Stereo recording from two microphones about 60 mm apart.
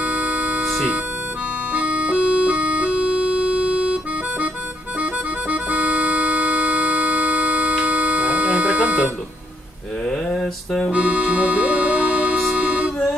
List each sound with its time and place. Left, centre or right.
0.0 s music: right
1.7 s music: right
10.0 s a sound: centre
10.9 s music: right